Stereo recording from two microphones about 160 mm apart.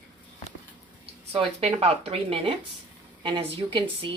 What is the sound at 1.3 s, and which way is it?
A woman's voice, 35° right (ahead or behind).